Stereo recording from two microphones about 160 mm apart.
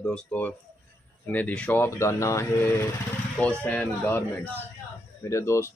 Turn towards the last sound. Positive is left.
turn(degrees=20)  # may be behind; listen again after turning